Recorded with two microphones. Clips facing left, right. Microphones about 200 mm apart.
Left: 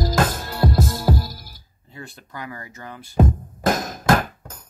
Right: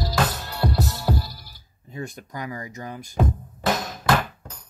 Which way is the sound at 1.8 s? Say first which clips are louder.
Right 6 dB; 15° right (ahead or behind).